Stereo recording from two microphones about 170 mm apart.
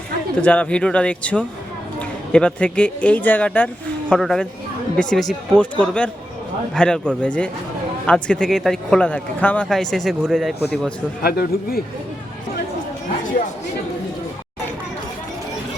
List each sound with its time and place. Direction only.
0.4 s a man's voice: 10° left (ahead or behind)
11.2 s a man's voice: 65° left (ahead or behind)